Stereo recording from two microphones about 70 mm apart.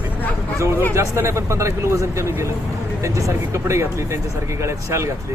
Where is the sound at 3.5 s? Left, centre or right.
Right.